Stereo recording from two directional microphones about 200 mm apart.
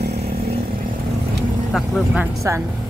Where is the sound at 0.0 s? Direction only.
55° right (ahead or behind).